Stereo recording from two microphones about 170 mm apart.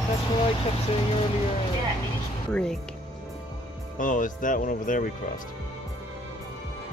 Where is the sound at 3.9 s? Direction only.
50° left (ahead or behind).